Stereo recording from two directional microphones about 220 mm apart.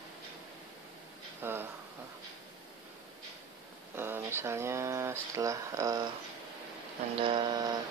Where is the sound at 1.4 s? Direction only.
10° right (ahead or behind).